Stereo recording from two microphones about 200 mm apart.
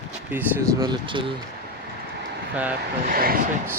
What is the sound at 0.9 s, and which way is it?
Speech, 25° right (ahead or behind).